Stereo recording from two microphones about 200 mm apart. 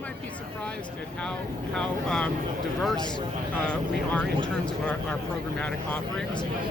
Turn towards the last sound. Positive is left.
turn(degrees=5)  # may be behind; listen again after turning